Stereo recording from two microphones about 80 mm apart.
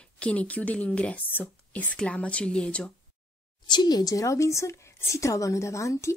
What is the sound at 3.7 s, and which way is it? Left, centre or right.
A woman's voice, left.